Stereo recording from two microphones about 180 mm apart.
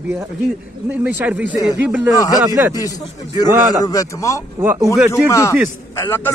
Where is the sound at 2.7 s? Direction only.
20° left (ahead or behind).